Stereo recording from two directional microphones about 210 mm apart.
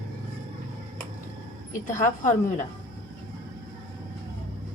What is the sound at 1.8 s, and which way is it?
Speech, 35° left (ahead or behind).